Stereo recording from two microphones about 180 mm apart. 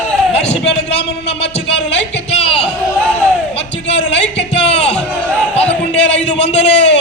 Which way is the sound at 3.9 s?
75° left (ahead or behind).